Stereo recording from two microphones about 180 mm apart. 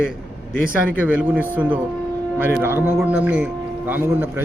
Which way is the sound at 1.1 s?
10° right (ahead or behind).